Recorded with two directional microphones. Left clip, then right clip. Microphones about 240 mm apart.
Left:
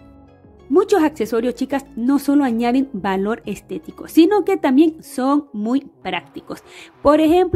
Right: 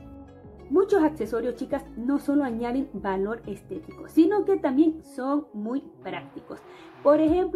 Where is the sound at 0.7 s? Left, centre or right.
Left.